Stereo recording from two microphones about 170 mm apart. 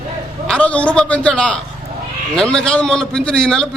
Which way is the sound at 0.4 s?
5° left (ahead or behind).